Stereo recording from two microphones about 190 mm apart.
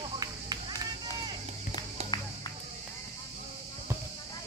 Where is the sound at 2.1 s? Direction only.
20° left (ahead or behind).